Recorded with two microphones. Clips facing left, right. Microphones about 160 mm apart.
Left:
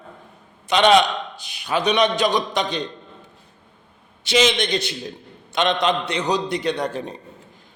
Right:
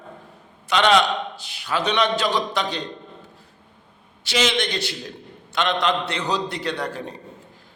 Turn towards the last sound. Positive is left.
turn(degrees=20)  # may be behind; listen again after turning